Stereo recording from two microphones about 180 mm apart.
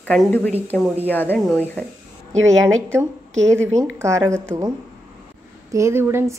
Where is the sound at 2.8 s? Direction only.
15° right (ahead or behind).